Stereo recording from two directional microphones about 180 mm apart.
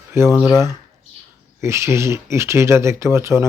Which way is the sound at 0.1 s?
15° right (ahead or behind).